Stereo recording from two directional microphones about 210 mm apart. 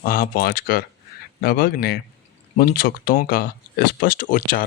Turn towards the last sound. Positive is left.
turn(degrees=40)  # may be behind; listen again after turning